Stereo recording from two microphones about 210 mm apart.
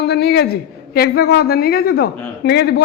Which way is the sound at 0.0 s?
50° left (ahead or behind).